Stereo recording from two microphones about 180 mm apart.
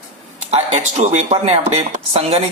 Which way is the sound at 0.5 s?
40° right (ahead or behind).